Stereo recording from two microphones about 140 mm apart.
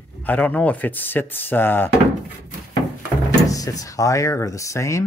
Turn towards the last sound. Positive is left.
turn(degrees=20)  # may be behind; listen again after turning